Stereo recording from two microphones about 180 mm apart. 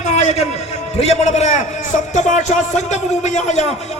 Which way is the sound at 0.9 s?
35° left (ahead or behind).